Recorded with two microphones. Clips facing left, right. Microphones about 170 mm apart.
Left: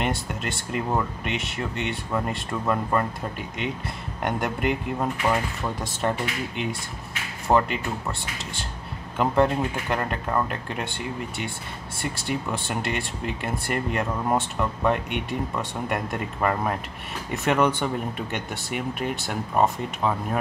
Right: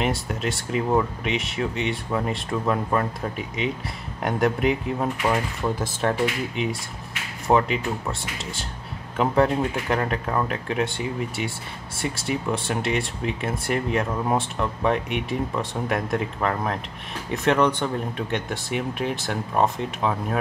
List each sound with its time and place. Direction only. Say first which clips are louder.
0.0 s speech: right 2 dB; centre (ahead or behind)